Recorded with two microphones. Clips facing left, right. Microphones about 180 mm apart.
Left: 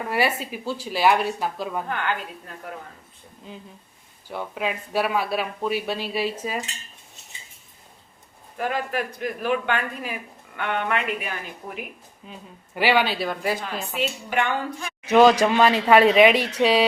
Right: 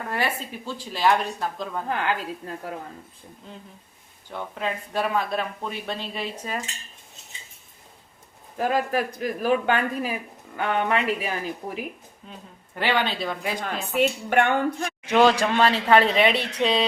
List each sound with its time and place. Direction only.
0.1 s speech: 10° left (ahead or behind)
1.9 s speech: 30° right (ahead or behind)
4.3 s speech: 10° left (ahead or behind)
8.5 s speech: 35° right (ahead or behind)
12.2 s a woman's voice: 5° left (ahead or behind)
14.3 s speech: 55° right (ahead or behind)
15.0 s speech: 10° left (ahead or behind)